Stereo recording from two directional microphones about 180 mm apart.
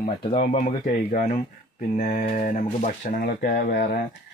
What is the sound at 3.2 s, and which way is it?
Speech, 55° left (ahead or behind).